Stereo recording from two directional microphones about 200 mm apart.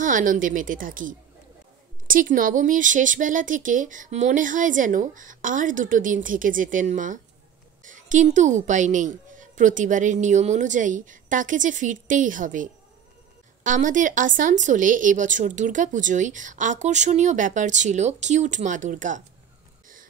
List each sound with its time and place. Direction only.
0.0 s speech: 40° right (ahead or behind)
13.7 s speech: 40° right (ahead or behind)